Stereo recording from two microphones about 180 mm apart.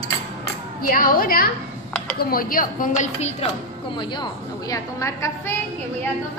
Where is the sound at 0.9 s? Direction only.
50° left (ahead or behind).